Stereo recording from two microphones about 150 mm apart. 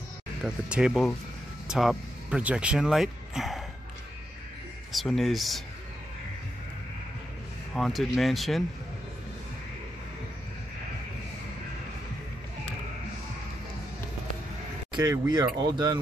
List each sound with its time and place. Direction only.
0.4 s speech: 5° right (ahead or behind)
4.9 s speech: centre (ahead or behind)
7.7 s speech: centre (ahead or behind)
15.0 s speech: 25° right (ahead or behind)